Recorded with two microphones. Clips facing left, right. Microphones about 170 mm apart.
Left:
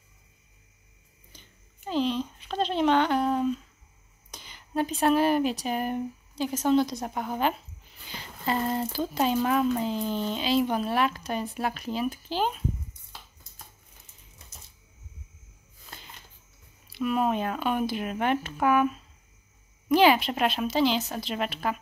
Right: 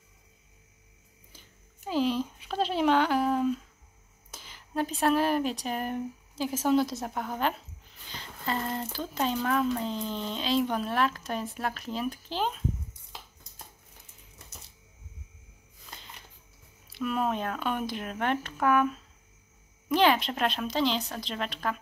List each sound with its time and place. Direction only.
1.3 s speech: 5° right (ahead or behind)
8.1 s a sound: 10° left (ahead or behind)
8.9 s a woman's voice: 10° left (ahead or behind)
17.0 s a woman's voice: 5° left (ahead or behind)